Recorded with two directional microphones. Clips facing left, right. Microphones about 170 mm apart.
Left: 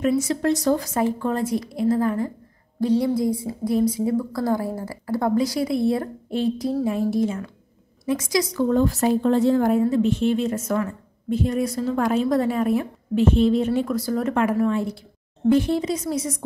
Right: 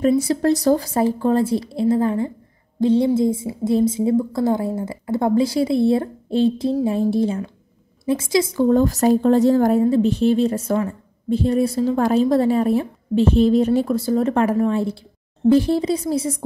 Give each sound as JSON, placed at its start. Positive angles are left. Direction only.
{"t": 0.2, "sound": "a woman's voice", "side_deg": -35}
{"t": 8.7, "sound": "speech", "side_deg": -40}